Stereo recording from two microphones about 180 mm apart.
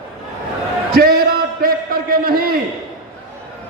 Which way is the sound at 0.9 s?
55° right (ahead or behind).